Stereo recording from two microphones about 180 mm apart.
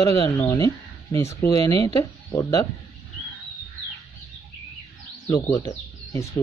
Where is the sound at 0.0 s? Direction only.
20° left (ahead or behind).